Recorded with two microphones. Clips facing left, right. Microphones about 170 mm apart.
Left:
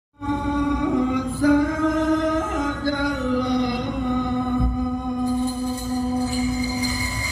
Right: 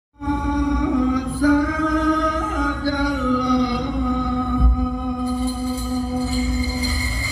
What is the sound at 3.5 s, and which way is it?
Music, 50° left (ahead or behind).